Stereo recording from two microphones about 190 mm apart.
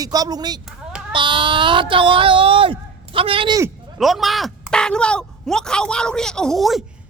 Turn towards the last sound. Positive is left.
turn(degrees=0)  # may be behind; listen again after turning